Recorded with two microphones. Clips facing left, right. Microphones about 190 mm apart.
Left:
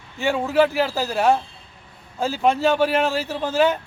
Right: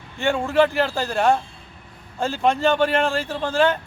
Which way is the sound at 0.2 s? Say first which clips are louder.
Even; 5° left (ahead or behind).